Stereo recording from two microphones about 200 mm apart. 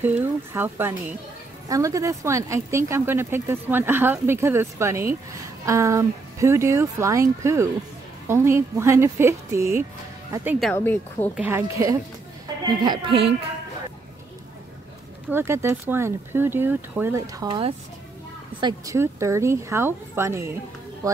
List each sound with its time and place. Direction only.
0.0 s speech: 10° right (ahead or behind)
10.7 s speech: 10° left (ahead or behind)
11.3 s speech: 10° right (ahead or behind)
15.2 s speech: 10° right (ahead or behind)